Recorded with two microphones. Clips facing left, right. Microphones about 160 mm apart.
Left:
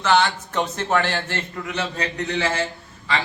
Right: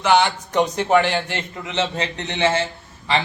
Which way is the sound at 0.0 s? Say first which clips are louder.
Right 2 dB; 15° right (ahead or behind).